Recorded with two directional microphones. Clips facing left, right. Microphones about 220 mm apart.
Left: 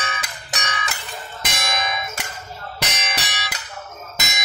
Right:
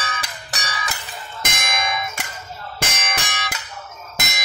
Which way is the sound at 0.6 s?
30° right (ahead or behind).